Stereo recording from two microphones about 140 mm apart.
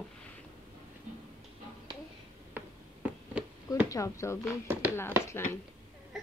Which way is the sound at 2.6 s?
10° right (ahead or behind).